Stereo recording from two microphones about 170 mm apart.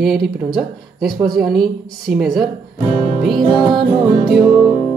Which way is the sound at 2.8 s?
30° left (ahead or behind).